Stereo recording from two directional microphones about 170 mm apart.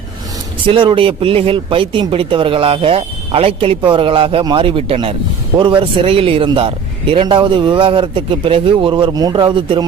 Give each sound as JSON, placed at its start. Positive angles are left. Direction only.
{"t": 0.7, "sound": "speech", "side_deg": -30}